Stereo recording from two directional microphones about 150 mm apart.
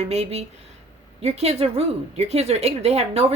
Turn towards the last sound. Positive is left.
turn(degrees=-45)  # may be behind; listen again after turning